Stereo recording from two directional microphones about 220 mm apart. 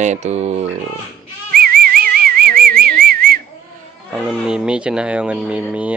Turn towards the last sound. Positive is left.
turn(degrees=-5)  # may be behind; listen again after turning